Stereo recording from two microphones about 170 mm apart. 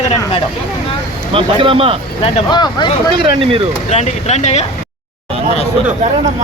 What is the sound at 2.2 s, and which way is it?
Speech, 30° left (ahead or behind).